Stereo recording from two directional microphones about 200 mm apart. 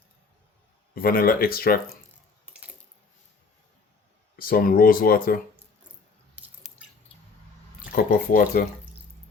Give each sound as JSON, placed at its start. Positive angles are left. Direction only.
{"t": 0.9, "sound": "speech", "side_deg": 45}
{"t": 2.5, "sound": "a sound", "side_deg": -5}
{"t": 4.4, "sound": "speech", "side_deg": 45}
{"t": 6.3, "sound": "squish", "side_deg": -5}
{"t": 7.9, "sound": "speech", "side_deg": 45}